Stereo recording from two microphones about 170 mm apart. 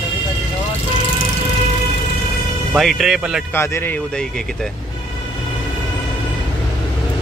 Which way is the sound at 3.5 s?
15° left (ahead or behind).